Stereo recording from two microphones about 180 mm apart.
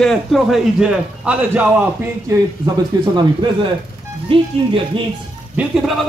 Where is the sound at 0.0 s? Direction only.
Centre (ahead or behind); by 3.1 s 20° right (ahead or behind).